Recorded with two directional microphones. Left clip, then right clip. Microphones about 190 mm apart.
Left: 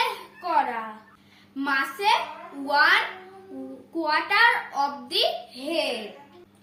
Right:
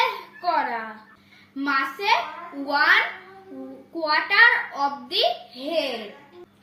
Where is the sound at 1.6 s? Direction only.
25° left (ahead or behind).